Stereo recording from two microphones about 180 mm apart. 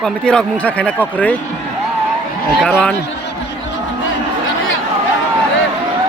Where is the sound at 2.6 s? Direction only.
5° left (ahead or behind).